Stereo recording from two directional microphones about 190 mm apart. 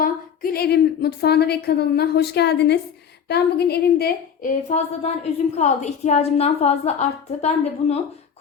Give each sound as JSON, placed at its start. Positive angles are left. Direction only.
{"t": 0.0, "sound": "a woman's voice", "side_deg": 50}
{"t": 4.7, "sound": "a woman's voice", "side_deg": 35}